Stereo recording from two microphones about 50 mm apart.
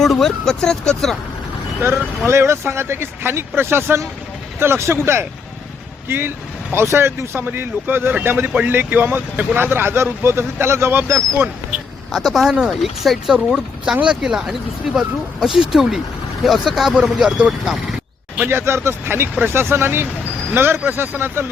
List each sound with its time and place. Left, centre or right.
0.0 s speech: centre
1.8 s speech: right
9.3 s speech: right
9.6 s speech: right
12.1 s speech: centre
13.3 s speech: centre
14.2 s speech: centre
16.9 s speech: centre
18.4 s speech: right